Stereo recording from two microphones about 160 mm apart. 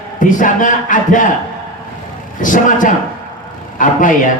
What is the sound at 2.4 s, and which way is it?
A man's voice, 55° left (ahead or behind).